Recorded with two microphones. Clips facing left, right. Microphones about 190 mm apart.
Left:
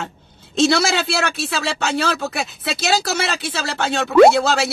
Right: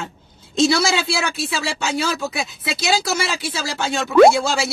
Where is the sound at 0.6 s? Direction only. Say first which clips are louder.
Left 1 dB; 60° left (ahead or behind).